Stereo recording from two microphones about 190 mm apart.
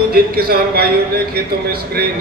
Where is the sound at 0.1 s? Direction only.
55° right (ahead or behind).